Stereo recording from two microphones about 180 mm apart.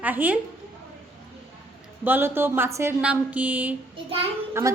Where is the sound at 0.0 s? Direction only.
10° right (ahead or behind).